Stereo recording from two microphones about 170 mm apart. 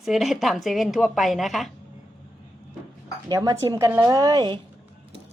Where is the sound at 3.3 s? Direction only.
20° right (ahead or behind).